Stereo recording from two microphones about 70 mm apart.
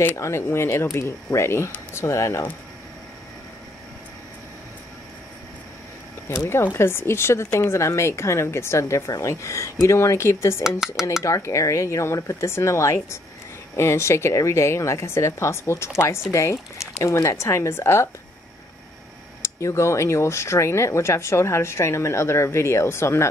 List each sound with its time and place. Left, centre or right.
0.0 s a woman's voice: left
6.2 s a woman's voice: left
19.4 s speech: left